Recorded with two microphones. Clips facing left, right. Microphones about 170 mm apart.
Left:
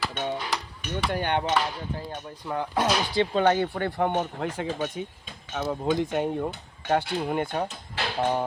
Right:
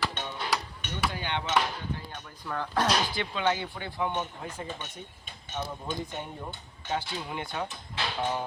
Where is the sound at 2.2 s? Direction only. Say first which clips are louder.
Left 3 dB; 20° left (ahead or behind).